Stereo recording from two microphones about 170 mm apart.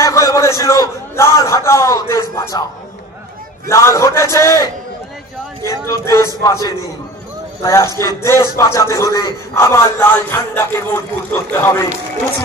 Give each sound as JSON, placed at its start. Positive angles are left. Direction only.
{"t": 0.0, "sound": "a man's voice", "side_deg": 20}
{"t": 3.6, "sound": "a man's voice", "side_deg": 15}
{"t": 5.9, "sound": "a man's voice", "side_deg": 20}